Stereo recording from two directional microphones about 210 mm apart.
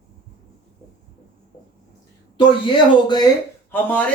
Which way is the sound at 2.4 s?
20° left (ahead or behind).